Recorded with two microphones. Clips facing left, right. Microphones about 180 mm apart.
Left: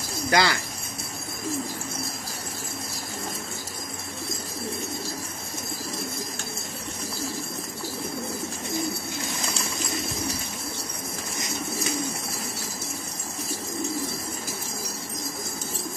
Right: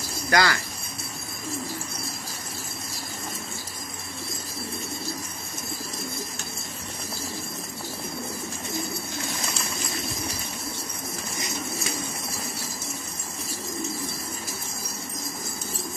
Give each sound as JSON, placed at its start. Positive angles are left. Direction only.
{"t": 0.3, "sound": "speech", "side_deg": 20}